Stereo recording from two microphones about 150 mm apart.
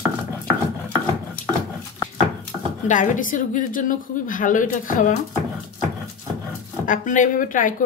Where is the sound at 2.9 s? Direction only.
60° left (ahead or behind).